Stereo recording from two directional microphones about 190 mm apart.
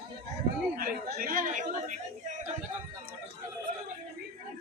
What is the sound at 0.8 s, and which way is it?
Chatter, 50° right (ahead or behind).